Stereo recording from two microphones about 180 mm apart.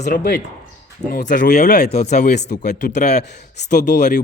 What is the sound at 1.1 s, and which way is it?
Speech, 70° left (ahead or behind).